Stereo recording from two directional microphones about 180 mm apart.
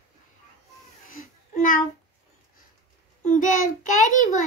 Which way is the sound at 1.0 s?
50° left (ahead or behind).